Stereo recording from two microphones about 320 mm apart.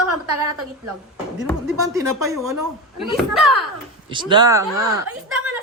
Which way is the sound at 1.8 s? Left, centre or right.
Centre.